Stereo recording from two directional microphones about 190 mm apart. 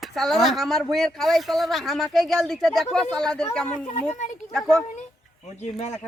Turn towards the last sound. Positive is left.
turn(degrees=35)  # may be behind; listen again after turning